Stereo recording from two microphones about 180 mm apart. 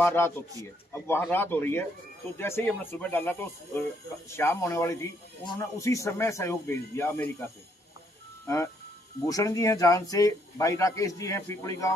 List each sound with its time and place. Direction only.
0.0 s speech: 15° left (ahead or behind)
9.2 s speech: 20° left (ahead or behind)